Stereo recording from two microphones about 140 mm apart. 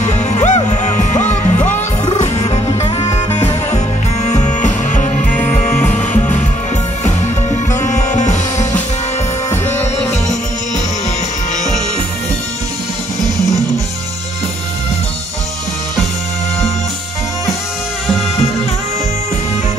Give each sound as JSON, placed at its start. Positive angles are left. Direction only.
{"t": 0.0, "sound": "music", "side_deg": 55}